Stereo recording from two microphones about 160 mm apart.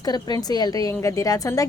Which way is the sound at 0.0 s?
25° left (ahead or behind).